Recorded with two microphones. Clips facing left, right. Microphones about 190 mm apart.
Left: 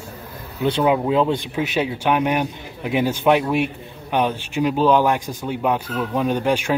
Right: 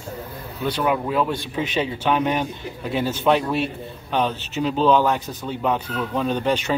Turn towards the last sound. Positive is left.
turn(degrees=10)  # may be behind; listen again after turning